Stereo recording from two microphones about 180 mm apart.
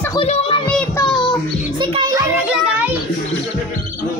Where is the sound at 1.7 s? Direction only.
30° right (ahead or behind); by 2.9 s 10° right (ahead or behind).